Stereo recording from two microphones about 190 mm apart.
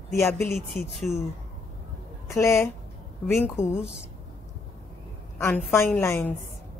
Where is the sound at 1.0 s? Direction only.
Centre (ahead or behind).